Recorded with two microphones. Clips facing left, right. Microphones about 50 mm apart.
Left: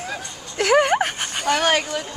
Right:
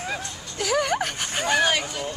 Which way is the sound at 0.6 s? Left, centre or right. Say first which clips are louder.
Left 7 dB; left.